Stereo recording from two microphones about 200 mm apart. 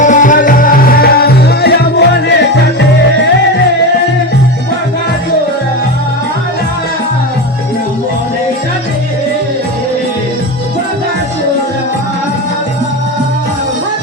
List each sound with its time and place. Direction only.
0.0 s music: 40° left (ahead or behind); by 2.3 s 55° left (ahead or behind)